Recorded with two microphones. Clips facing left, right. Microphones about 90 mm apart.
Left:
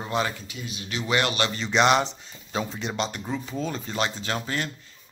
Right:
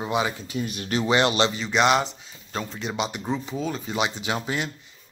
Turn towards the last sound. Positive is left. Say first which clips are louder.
# right 2 dB
turn(degrees=-10)  # may be behind; listen again after turning